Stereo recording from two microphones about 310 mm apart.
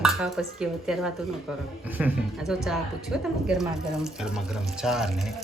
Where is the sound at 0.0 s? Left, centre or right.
Centre.